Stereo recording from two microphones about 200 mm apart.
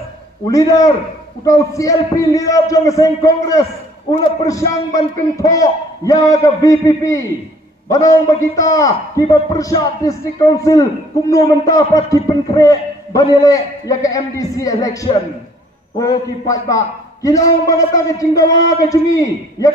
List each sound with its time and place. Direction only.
0.5 s a man's voice: 15° left (ahead or behind)